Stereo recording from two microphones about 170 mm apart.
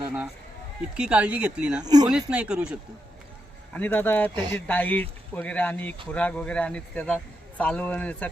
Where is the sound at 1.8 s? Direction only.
25° right (ahead or behind).